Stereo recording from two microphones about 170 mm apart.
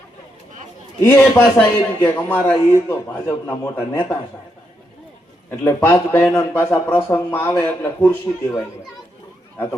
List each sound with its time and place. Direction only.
1.0 s a man's voice: 10° left (ahead or behind)
5.5 s a man's voice: 15° left (ahead or behind)